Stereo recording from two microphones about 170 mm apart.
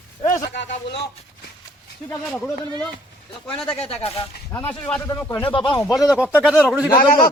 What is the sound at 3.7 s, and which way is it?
Speech, 35° left (ahead or behind).